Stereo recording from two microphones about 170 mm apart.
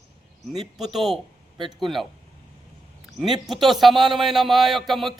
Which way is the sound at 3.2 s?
Centre (ahead or behind).